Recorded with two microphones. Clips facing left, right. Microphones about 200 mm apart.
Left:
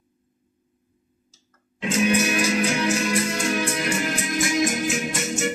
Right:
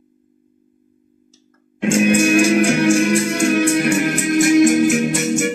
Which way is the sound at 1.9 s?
50° right (ahead or behind).